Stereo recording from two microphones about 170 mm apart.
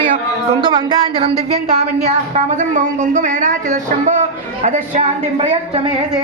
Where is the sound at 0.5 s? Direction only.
30° right (ahead or behind).